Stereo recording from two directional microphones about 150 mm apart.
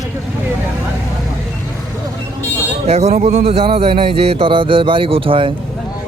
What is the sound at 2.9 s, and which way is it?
A man's voice, 45° right (ahead or behind).